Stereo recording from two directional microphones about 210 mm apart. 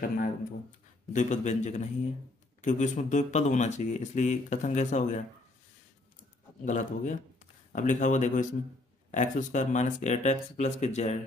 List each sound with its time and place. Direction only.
0.2 s speech: 35° left (ahead or behind)
6.6 s speech: 35° left (ahead or behind)